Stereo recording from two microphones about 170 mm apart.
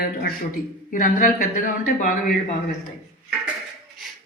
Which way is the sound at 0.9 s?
55° left (ahead or behind).